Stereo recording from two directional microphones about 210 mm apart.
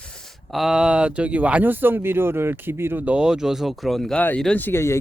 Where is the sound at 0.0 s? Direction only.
5° left (ahead or behind).